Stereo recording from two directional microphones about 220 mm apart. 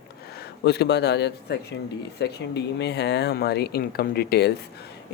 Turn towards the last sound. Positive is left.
turn(degrees=45)  # may be behind; listen again after turning